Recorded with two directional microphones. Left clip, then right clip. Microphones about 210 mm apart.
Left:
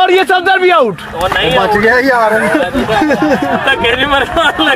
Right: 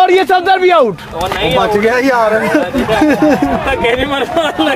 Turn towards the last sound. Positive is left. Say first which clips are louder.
# left 2 dB
turn(degrees=-25)  # may be behind; listen again after turning